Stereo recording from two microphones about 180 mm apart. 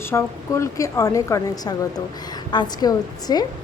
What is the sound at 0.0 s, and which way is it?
A woman's voice, 15° left (ahead or behind).